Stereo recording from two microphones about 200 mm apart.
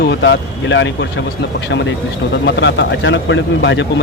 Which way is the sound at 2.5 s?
65° left (ahead or behind).